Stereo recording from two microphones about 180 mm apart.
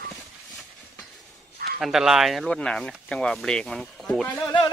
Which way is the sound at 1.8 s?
Centre (ahead or behind).